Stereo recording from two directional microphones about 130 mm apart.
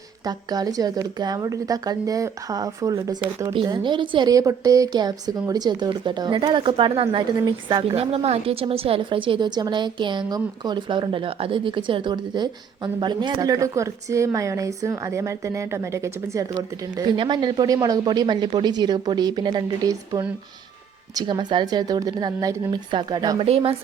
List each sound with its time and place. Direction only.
0.3 s a woman's voice: 30° right (ahead or behind)
3.2 s a woman's voice: 40° right (ahead or behind)
4.3 s a woman's voice: 25° right (ahead or behind)
7.9 s a woman's voice: 50° right (ahead or behind); by 16.5 s 25° right (ahead or behind)
17.0 s a woman's voice: 35° right (ahead or behind)
23.4 s a woman's voice: 50° right (ahead or behind)